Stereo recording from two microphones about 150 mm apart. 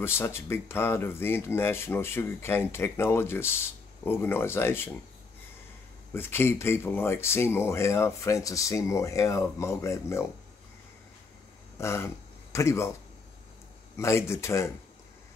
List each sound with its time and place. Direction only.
0.0 s speech: 15° left (ahead or behind)
6.1 s speech: 15° left (ahead or behind)
11.8 s speech: 20° left (ahead or behind)
13.9 s speech: 20° left (ahead or behind)